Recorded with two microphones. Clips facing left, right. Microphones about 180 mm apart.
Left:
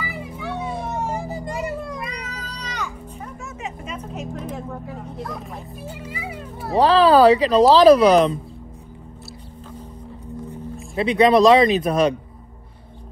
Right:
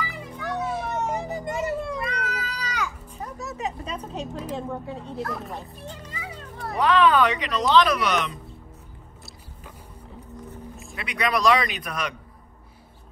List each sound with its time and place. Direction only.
0.0 s children playing: 5° left (ahead or behind)
1.1 s children playing: 20° right (ahead or behind)
2.0 s children playing: centre (ahead or behind)
3.2 s a sound: 35° right (ahead or behind)
5.2 s a child's voice: centre (ahead or behind)
5.8 s music: 10° left (ahead or behind)
6.7 s speech: 30° left (ahead or behind)
11.0 s speech: 30° left (ahead or behind)